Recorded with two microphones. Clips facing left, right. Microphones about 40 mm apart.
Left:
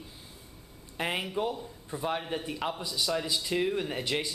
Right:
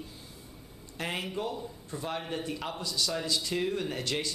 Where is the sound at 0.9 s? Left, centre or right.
Centre.